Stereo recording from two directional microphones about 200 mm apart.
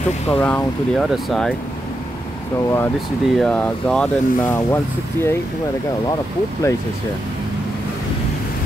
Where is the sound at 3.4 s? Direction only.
5° left (ahead or behind).